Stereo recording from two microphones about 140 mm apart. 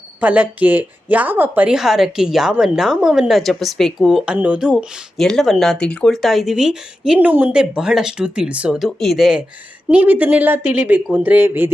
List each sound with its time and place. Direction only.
0.2 s a woman's voice: 10° right (ahead or behind)